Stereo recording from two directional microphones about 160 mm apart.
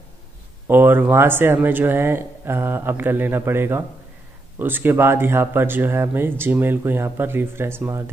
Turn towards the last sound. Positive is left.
turn(degrees=-15)  # may be behind; listen again after turning